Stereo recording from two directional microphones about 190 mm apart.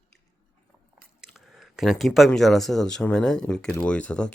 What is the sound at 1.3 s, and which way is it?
Speech, centre (ahead or behind).